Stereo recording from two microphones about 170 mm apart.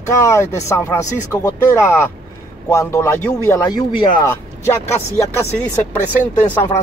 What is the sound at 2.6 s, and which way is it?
Speech, 15° left (ahead or behind).